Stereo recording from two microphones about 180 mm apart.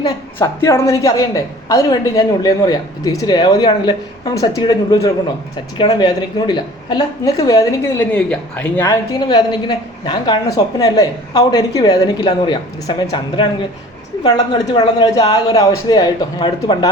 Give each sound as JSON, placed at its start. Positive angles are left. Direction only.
{"t": 0.0, "sound": "a woman's voice", "side_deg": 15}
{"t": 8.1, "sound": "a woman's voice", "side_deg": 5}
{"t": 14.7, "sound": "a woman's voice", "side_deg": 20}